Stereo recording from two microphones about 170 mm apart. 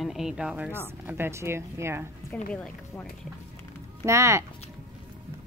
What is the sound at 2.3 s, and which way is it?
Speech, 5° left (ahead or behind).